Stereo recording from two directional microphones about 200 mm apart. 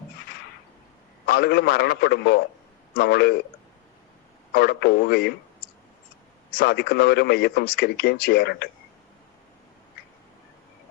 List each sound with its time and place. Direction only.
1.3 s a man's voice: 55° left (ahead or behind)
4.5 s speech: 55° left (ahead or behind)
6.5 s speech: 55° left (ahead or behind)